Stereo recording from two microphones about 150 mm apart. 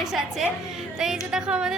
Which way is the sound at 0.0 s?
Centre (ahead or behind).